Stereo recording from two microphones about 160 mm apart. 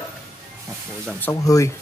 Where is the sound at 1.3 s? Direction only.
20° left (ahead or behind).